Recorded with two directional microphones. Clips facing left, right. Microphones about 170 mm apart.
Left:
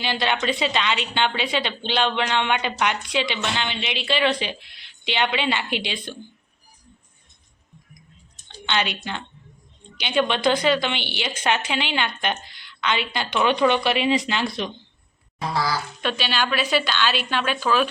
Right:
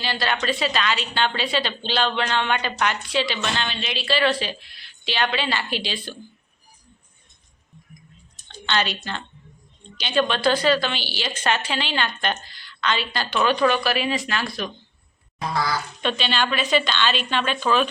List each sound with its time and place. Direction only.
0.0 s a woman's voice: 20° left (ahead or behind)
8.4 s a woman's voice: 15° left (ahead or behind)
16.0 s a woman's voice: 5° left (ahead or behind)